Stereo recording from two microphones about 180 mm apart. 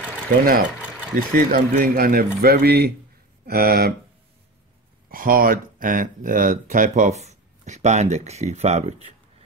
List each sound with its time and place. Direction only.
1.1 s speech: 45° right (ahead or behind)
5.1 s speech: 50° right (ahead or behind); by 9.1 s 35° right (ahead or behind)